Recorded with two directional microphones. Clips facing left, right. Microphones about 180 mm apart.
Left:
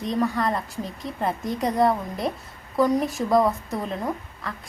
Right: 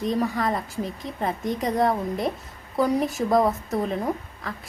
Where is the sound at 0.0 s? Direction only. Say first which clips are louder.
Even; centre (ahead or behind).